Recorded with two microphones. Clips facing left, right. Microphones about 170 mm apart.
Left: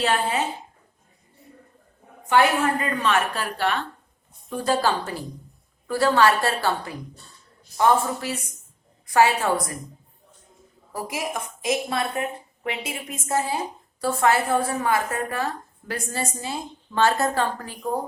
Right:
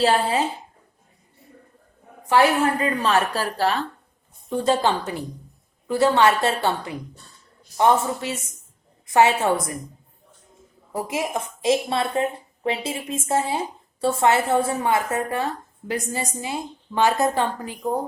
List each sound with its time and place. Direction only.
0.0 s speech: 35° right (ahead or behind)
3.0 s speech: 35° right (ahead or behind)
4.4 s a woman's voice: 25° right (ahead or behind)
10.9 s a woman's voice: 25° right (ahead or behind)